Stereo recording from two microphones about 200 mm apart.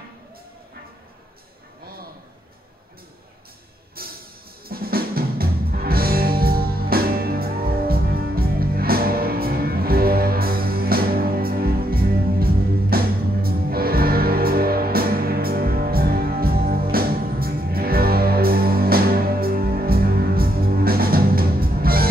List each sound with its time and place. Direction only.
4.0 s music: 50° right (ahead or behind)